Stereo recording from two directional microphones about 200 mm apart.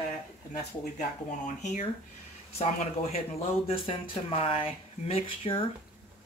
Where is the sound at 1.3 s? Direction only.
40° left (ahead or behind).